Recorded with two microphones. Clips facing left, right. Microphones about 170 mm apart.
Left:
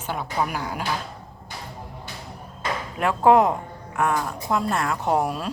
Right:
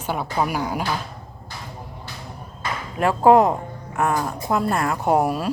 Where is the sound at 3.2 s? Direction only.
Centre (ahead or behind).